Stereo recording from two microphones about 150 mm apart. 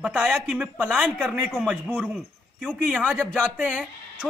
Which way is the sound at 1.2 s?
Centre (ahead or behind).